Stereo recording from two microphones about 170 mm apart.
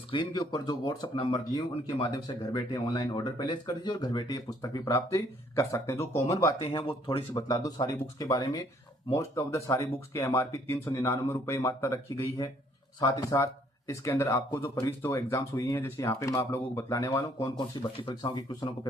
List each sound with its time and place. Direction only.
0.1 s speech: 25° left (ahead or behind)
6.6 s speech: 35° left (ahead or behind)
7.4 s speech: 20° left (ahead or behind)
18.0 s speech: 30° left (ahead or behind)